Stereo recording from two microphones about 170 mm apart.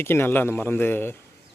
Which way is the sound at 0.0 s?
15° left (ahead or behind).